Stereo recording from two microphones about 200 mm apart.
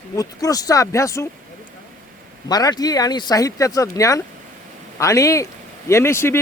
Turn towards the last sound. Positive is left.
turn(degrees=10)  # may be behind; listen again after turning